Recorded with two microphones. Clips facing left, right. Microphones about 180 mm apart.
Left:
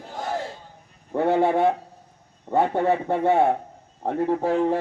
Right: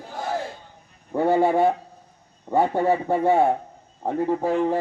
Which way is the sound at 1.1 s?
Centre (ahead or behind).